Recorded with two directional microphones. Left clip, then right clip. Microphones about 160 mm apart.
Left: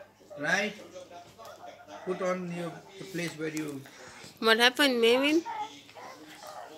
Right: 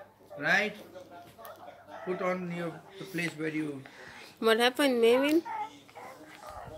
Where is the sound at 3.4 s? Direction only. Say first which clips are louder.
Even; 25° right (ahead or behind).